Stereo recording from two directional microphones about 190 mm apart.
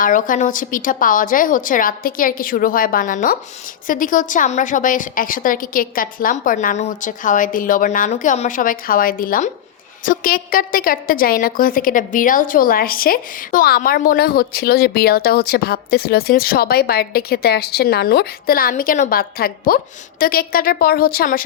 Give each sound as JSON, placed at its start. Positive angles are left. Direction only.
{"t": 0.0, "sound": "a woman's voice", "side_deg": 45}